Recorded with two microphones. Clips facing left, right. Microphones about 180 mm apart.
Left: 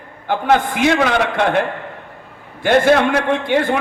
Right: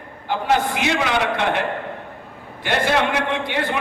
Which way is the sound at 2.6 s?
50° left (ahead or behind).